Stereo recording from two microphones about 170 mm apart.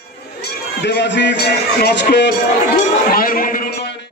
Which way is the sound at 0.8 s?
90° left.